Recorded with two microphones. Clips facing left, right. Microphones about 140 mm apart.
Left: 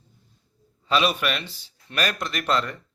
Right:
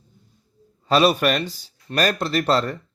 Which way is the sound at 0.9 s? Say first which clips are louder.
Right 6 dB; 40° right (ahead or behind).